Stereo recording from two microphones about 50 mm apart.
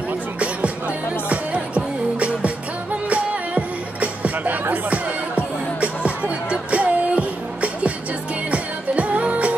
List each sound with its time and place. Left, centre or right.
0.4 s music: right